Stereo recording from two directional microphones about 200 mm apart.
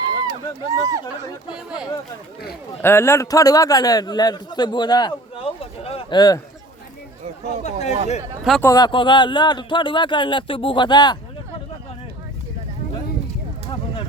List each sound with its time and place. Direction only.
0.0 s run: 20° right (ahead or behind)
1.5 s speech: 5° right (ahead or behind)
2.8 s a man's voice: 10° left (ahead or behind)
7.6 s speech: 35° left (ahead or behind)
8.6 s a man's voice: 20° left (ahead or behind)